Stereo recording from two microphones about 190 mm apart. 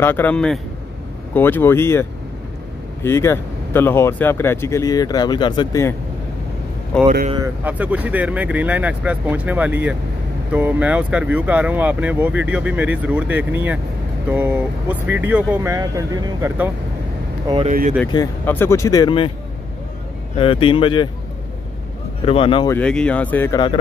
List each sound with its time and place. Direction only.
0.0 s speech: 10° left (ahead or behind)
7.1 s speech: 35° right (ahead or behind)
7.3 s speech: 10° right (ahead or behind)
17.6 s speech: 40° right (ahead or behind)
18.1 s speech: 15° left (ahead or behind)
20.3 s speech: 30° left (ahead or behind)
22.2 s speech: 30° left (ahead or behind)
22.7 s speech: 5° left (ahead or behind)